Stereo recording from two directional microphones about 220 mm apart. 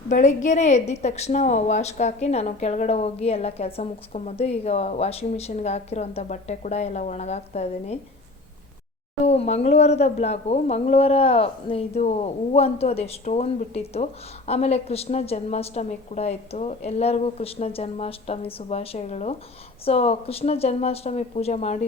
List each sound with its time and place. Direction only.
0.1 s a woman's voice: 35° left (ahead or behind)
9.2 s speech: 30° left (ahead or behind)